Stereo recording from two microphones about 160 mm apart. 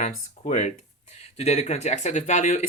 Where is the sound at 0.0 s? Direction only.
50° left (ahead or behind).